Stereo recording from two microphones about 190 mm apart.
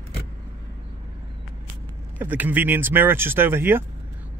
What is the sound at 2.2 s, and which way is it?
Speech, 10° right (ahead or behind).